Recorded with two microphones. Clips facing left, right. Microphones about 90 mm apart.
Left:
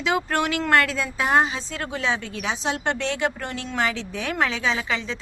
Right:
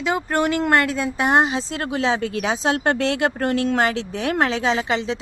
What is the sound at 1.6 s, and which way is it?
Speech, 30° right (ahead or behind).